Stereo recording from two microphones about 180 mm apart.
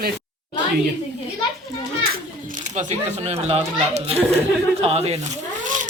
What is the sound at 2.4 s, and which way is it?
Speech, 45° right (ahead or behind).